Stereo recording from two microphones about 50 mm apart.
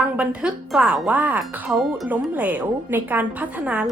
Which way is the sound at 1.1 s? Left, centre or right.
Right.